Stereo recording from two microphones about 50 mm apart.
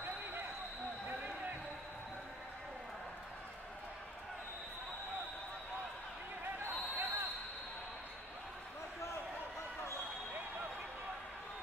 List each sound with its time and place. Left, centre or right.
7.0 s basketball bounce: right